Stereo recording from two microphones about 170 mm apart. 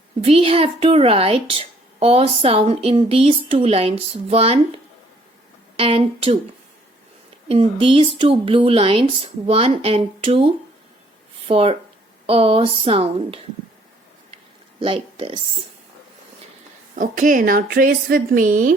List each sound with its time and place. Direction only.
0.2 s speech: 35° right (ahead or behind)
5.7 s speech: 35° right (ahead or behind)
7.4 s speech: 35° right (ahead or behind)
14.8 s speech: 30° right (ahead or behind)
16.9 s a woman's voice: 50° right (ahead or behind)